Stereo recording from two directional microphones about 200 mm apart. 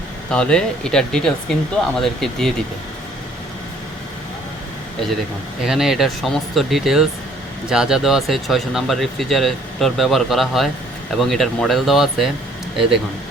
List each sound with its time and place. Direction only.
0.3 s speech: 5° left (ahead or behind)
5.6 s speech: centre (ahead or behind)